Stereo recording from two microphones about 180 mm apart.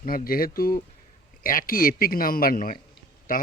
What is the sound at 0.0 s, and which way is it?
A man's voice, 55° left (ahead or behind).